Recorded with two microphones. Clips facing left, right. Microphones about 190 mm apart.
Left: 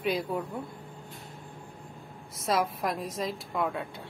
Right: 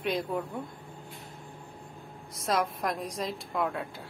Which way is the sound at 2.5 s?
5° left (ahead or behind).